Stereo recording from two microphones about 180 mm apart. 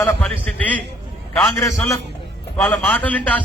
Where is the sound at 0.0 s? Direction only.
10° left (ahead or behind).